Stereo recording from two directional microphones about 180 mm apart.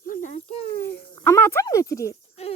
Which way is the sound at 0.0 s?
45° left (ahead or behind).